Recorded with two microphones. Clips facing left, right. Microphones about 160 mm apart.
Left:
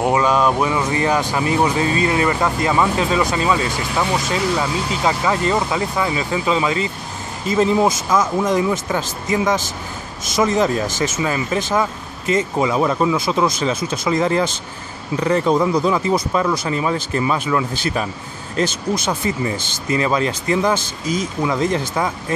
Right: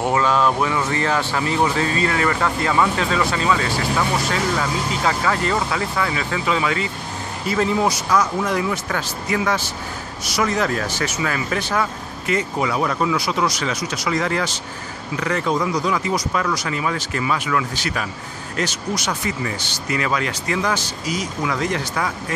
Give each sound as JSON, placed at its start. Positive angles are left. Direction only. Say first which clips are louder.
{"t": 0.0, "sound": "speech", "louder": "left 2 dB", "side_deg": 15}